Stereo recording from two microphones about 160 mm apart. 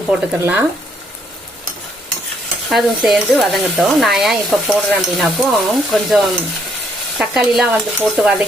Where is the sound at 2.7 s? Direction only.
Centre (ahead or behind).